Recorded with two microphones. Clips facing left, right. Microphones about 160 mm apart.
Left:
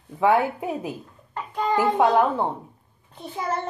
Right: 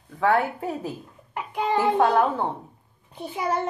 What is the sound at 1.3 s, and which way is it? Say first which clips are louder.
Child singing: left 1 dB; 15° right (ahead or behind).